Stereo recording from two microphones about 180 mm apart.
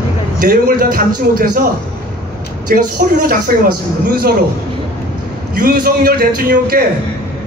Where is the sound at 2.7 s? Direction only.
55° right (ahead or behind).